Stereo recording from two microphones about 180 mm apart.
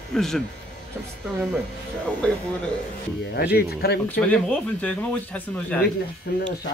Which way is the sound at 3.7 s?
60° left (ahead or behind).